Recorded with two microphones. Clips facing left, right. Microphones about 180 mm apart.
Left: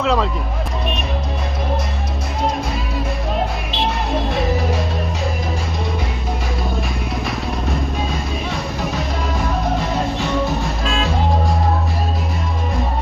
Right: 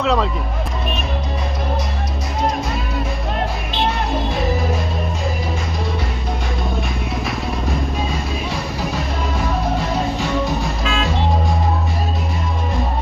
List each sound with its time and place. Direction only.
0.0 s speech: centre (ahead or behind)
3.3 s music: centre (ahead or behind)
8.4 s music: centre (ahead or behind)
10.8 s music: centre (ahead or behind)